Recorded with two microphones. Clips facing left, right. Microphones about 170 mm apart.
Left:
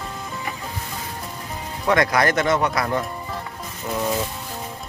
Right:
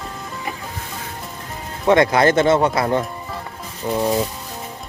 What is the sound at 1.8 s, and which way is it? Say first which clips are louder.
Speech: right 5 dB; 25° right (ahead or behind).